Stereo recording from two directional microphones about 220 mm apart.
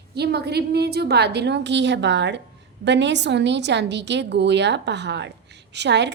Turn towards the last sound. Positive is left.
turn(degrees=-50)  # may be behind; listen again after turning